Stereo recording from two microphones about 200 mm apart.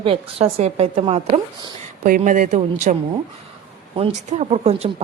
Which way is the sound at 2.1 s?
40° right (ahead or behind).